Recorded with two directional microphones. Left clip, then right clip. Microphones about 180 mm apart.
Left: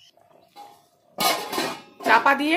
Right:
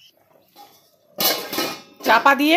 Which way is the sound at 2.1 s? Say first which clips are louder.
Right 3 dB; 20° right (ahead or behind).